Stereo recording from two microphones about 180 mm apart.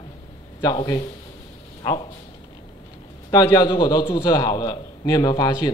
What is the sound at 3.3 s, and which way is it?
A man's voice, 20° left (ahead or behind).